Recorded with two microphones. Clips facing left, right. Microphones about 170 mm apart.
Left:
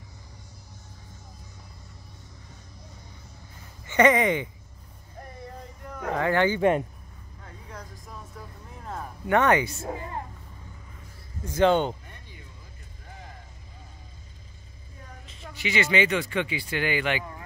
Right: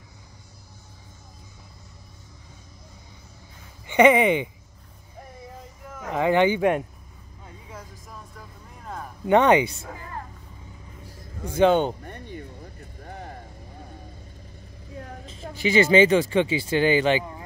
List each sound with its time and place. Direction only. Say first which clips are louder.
3.8 s speech: right 4 dB; 15° right (ahead or behind)
5.4 s a sound: left 2 dB; centre (ahead or behind)
6.1 s speech: right 4 dB; 15° right (ahead or behind)
6.6 s speech: even; 5° right (ahead or behind)
7.4 s vehicle: right 1 dB; 5° right (ahead or behind)
9.3 s speech: right 4 dB; 20° right (ahead or behind)
9.8 s a woman's voice: left 4 dB; 25° left (ahead or behind)
11.5 s speech: right 2 dB; 15° right (ahead or behind)
12.0 s a sound: right 12 dB; 55° right (ahead or behind)
15.0 s vehicle: right 9 dB; 70° right (ahead or behind)
15.4 s speech: right 8 dB; 30° right (ahead or behind)